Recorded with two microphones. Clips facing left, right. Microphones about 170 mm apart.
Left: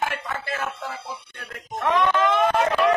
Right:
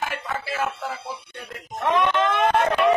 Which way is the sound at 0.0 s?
5° right (ahead or behind).